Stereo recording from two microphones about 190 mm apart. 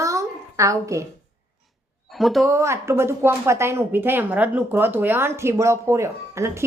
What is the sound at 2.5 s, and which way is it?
Speech, 15° right (ahead or behind).